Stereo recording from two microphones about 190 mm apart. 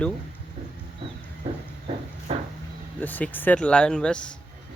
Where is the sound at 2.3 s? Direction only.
30° right (ahead or behind).